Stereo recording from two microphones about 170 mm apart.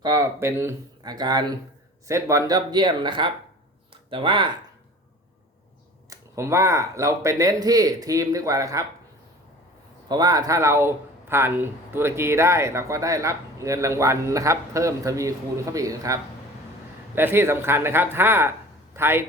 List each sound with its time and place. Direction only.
0.0 s speech: 20° right (ahead or behind)
6.1 s speech: 15° right (ahead or behind)
10.1 s speech: 25° right (ahead or behind)
17.2 s speech: 15° right (ahead or behind)